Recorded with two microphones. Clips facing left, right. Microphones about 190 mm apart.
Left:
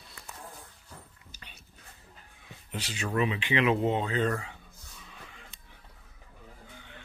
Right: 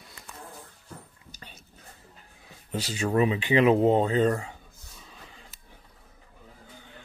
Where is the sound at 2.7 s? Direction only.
40° right (ahead or behind).